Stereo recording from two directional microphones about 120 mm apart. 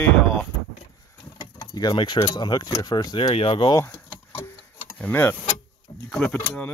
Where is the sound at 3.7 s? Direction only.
20° left (ahead or behind).